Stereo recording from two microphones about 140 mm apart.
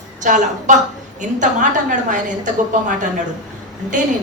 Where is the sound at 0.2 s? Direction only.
60° right (ahead or behind).